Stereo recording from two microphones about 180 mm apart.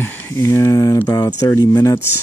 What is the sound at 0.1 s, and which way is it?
Speech, 15° left (ahead or behind).